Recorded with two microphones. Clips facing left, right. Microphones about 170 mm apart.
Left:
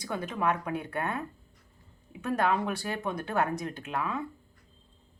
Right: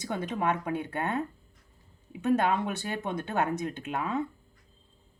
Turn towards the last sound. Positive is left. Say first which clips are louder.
# right 2 dB
turn(degrees=-25)  # may be behind; listen again after turning